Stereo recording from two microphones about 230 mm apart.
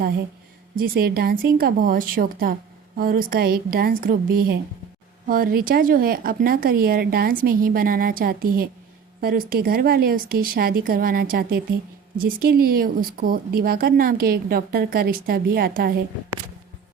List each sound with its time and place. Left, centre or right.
0.8 s speech: right